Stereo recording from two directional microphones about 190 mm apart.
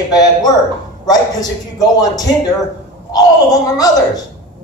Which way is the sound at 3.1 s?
20° left (ahead or behind).